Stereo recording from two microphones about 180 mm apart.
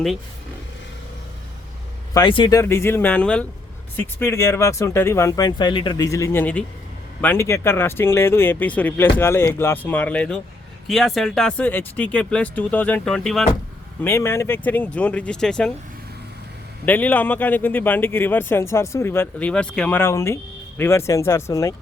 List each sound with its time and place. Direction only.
2.1 s a man's voice: 25° left (ahead or behind); by 13.4 s 5° left (ahead or behind)
14.0 s a man's voice: 15° left (ahead or behind)
16.8 s a man's voice: 10° left (ahead or behind)